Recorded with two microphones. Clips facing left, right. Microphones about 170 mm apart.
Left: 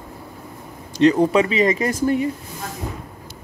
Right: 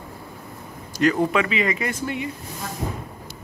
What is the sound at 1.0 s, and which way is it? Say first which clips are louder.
Speech: left 5 dB; 30° left (ahead or behind).